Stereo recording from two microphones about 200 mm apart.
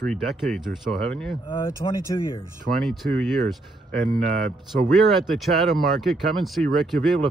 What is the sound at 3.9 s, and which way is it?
Speech, 45° right (ahead or behind).